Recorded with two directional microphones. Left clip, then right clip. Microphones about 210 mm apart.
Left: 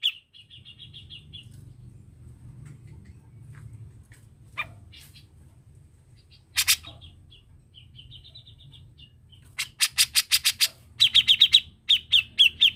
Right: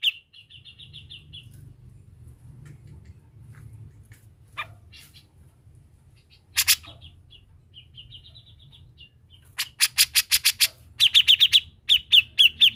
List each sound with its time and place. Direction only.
6.5 s bird: 10° right (ahead or behind)
9.6 s bird: 15° right (ahead or behind)